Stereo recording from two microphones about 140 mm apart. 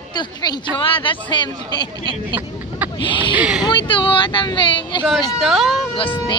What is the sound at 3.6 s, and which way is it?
Speech, 35° left (ahead or behind).